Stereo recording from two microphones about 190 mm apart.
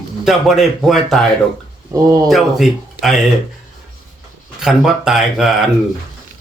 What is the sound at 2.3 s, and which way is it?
Speech, centre (ahead or behind).